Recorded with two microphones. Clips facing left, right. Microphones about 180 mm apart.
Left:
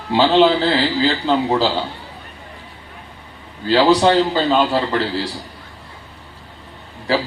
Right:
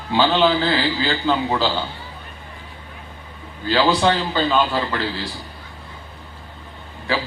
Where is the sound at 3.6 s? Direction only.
35° left (ahead or behind).